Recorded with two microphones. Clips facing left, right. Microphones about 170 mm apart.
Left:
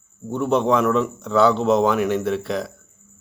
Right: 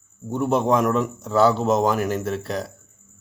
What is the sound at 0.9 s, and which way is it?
A man's voice, 45° right (ahead or behind).